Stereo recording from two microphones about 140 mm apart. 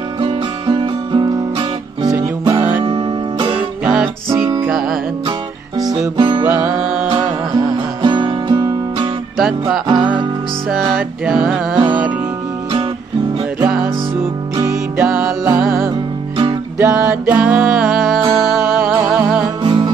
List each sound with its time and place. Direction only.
0.2 s guitar: 35° right (ahead or behind)
2.8 s music: 35° right (ahead or behind)
3.8 s music: 5° right (ahead or behind)
5.8 s music: 25° right (ahead or behind)
7.5 s music: 35° right (ahead or behind)
9.4 s music: centre (ahead or behind)
9.8 s music: 35° right (ahead or behind)
10.7 s music: centre (ahead or behind)
13.7 s music: 10° right (ahead or behind)
16.7 s music: 10° right (ahead or behind)
19.6 s music: 35° right (ahead or behind)